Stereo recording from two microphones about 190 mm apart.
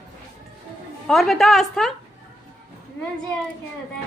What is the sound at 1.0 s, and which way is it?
Speech, centre (ahead or behind).